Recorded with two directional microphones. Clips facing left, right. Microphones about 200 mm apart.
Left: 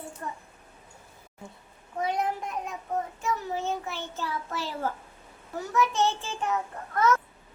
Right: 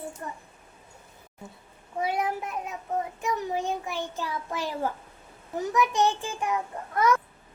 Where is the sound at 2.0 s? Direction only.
10° right (ahead or behind).